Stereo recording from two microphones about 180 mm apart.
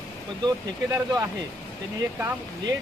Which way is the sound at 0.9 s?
15° right (ahead or behind).